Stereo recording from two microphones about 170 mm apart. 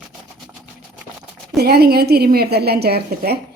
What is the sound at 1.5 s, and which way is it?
A woman's voice, 65° right (ahead or behind).